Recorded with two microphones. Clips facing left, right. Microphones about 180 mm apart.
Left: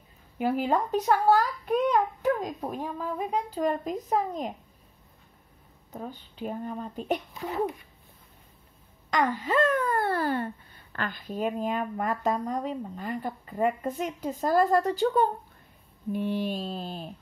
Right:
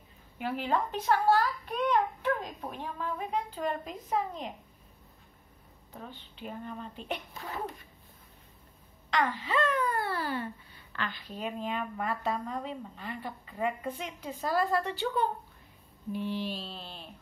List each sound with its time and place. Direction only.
0.4 s speech: 40° left (ahead or behind)
5.9 s speech: 40° left (ahead or behind)
9.1 s speech: 45° left (ahead or behind)
16.1 s speech: 50° left (ahead or behind)